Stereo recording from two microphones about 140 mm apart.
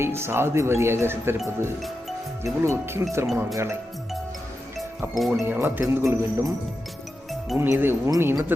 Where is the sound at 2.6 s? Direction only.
20° right (ahead or behind).